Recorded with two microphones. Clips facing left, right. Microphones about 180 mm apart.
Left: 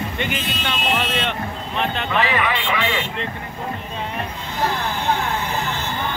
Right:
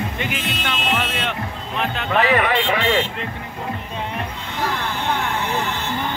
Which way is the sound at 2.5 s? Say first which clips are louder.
Right 4 dB; 35° right (ahead or behind).